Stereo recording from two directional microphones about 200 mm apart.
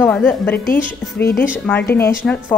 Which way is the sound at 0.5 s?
45° left (ahead or behind).